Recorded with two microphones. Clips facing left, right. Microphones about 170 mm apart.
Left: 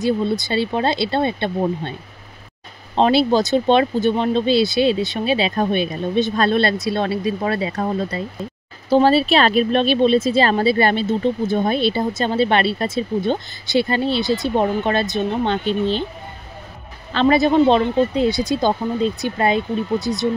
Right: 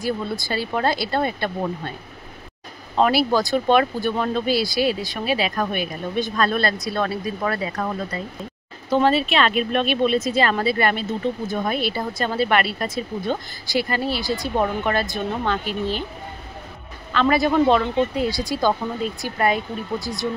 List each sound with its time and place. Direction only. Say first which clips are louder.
0.0 s speech: left 6 dB; 20° left (ahead or behind)
3.0 s speech: left 3 dB; 25° left (ahead or behind)
17.1 s speech: left 4 dB; 25° left (ahead or behind)